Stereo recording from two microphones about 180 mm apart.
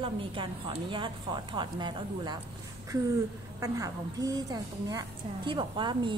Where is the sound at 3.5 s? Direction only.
20° right (ahead or behind).